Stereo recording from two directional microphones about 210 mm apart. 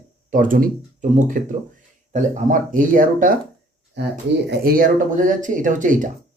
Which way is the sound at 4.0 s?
55° right (ahead or behind).